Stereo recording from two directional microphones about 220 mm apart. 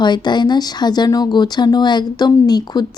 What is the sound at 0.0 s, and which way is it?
Speech, 20° left (ahead or behind).